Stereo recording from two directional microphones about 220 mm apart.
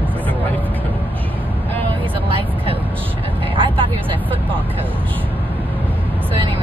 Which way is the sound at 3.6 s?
25° right (ahead or behind).